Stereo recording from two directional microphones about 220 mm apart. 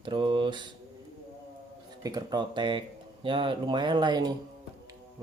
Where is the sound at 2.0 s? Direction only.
15° right (ahead or behind).